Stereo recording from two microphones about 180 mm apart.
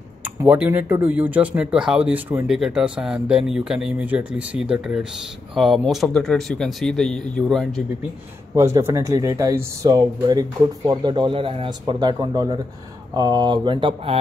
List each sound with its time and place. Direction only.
0.2 s speech: 10° right (ahead or behind)
8.5 s speech: 15° right (ahead or behind)